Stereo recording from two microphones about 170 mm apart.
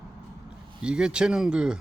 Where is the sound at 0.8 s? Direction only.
5° right (ahead or behind).